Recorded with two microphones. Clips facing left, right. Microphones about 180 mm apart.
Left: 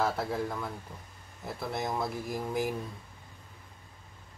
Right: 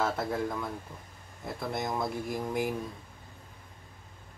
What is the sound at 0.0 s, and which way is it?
Speech, 10° left (ahead or behind).